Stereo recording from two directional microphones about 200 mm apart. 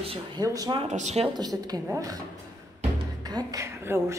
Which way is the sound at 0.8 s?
35° right (ahead or behind).